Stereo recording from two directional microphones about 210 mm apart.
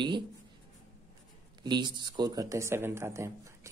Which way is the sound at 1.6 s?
20° right (ahead or behind).